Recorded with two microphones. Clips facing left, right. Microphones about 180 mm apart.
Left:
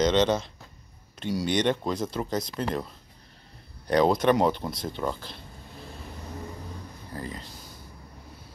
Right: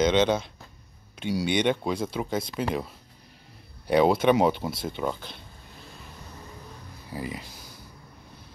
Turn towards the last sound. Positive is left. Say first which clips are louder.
# right 2 dB
turn(degrees=-10)  # may be behind; listen again after turning